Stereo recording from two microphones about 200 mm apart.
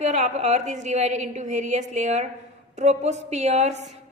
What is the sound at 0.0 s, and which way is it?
A woman's voice, 35° right (ahead or behind).